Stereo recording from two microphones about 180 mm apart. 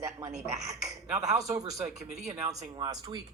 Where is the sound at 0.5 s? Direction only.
20° right (ahead or behind).